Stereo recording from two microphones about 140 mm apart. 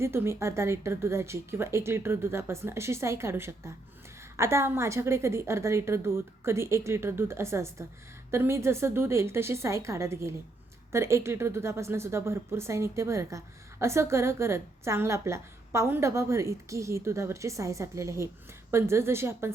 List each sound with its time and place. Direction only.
0.0 s a woman's voice: 15° right (ahead or behind)